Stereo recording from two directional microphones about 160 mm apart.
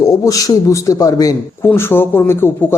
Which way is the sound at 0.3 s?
20° left (ahead or behind).